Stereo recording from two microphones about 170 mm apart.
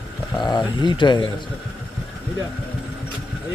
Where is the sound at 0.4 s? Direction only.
25° left (ahead or behind).